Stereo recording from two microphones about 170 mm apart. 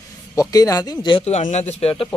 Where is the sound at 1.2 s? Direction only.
40° left (ahead or behind).